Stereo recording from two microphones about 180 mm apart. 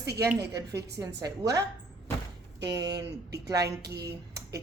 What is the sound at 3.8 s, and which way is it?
Speech, 65° right (ahead or behind).